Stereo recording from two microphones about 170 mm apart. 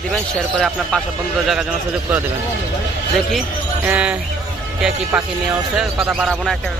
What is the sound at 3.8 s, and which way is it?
Speech, 10° right (ahead or behind).